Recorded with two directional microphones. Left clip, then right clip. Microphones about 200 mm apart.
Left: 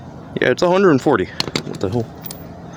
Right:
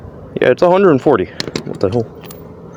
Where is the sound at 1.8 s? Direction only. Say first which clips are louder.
Right 8 dB; 15° right (ahead or behind).